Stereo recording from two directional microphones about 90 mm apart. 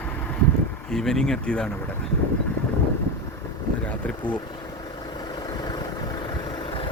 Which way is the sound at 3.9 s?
15° left (ahead or behind).